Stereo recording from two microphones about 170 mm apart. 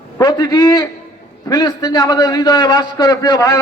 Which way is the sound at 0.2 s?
25° left (ahead or behind).